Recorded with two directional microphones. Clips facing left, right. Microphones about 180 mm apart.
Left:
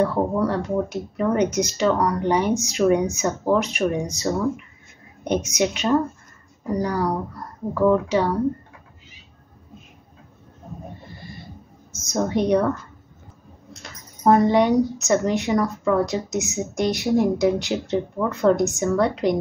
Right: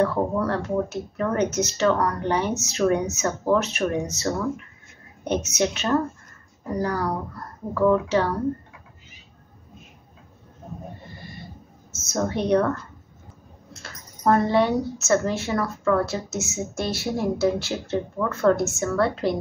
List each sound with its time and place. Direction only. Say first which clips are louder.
0.0 s speech: left 2 dB; 10° left (ahead or behind)
11.9 s speech: left 3 dB; 15° left (ahead or behind)
13.8 s speech: left 3 dB; 15° left (ahead or behind)